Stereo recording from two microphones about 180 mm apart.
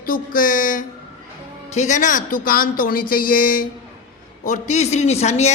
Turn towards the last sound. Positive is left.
turn(degrees=35)  # may be behind; listen again after turning